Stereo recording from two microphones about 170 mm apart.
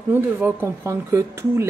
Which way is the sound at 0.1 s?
10° right (ahead or behind).